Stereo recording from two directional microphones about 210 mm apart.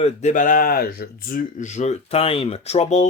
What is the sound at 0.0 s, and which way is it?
Speech, 35° left (ahead or behind).